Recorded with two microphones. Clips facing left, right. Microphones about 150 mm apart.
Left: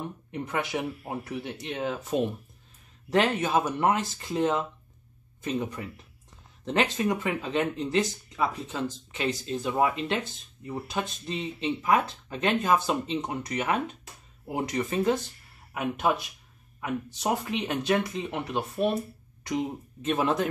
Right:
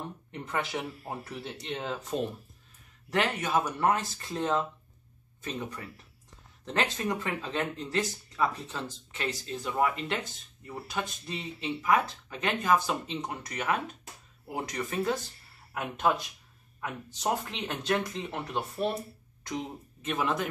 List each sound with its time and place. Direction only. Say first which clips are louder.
0.3 s speech: left 3 dB; 10° left (ahead or behind)
3.1 s speech: left 4 dB; 25° left (ahead or behind)
15.7 s speech: left 2 dB; 5° left (ahead or behind)
20.1 s speech: left 4 dB; 30° left (ahead or behind)